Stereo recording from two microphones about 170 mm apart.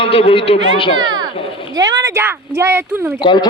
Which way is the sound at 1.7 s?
20° right (ahead or behind).